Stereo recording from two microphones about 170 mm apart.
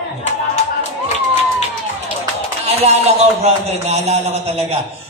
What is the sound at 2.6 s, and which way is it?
A man's voice, 40° right (ahead or behind).